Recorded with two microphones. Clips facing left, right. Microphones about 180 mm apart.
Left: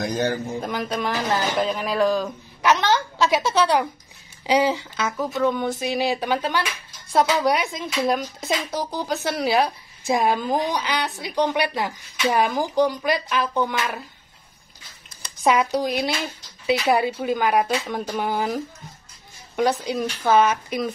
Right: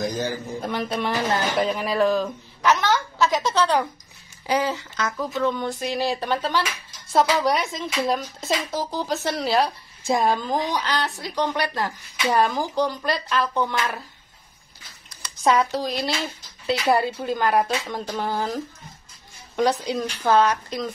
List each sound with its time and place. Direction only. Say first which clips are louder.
0.0 s a man's voice: left 3 dB; 70° left (ahead or behind)
0.7 s a woman's voice: right 2 dB; centre (ahead or behind)
2.7 s a woman's voice: left 1 dB; 15° left (ahead or behind); by 11.1 s centre (ahead or behind)
11.3 s speech: left 3 dB; 20° left (ahead or behind)
12.8 s a woman's voice: left 3 dB; centre (ahead or behind)
15.3 s a woman's voice: left 1 dB; centre (ahead or behind)